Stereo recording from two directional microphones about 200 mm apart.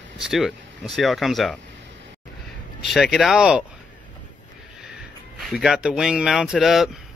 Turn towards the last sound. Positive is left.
turn(degrees=0)  # may be behind; listen again after turning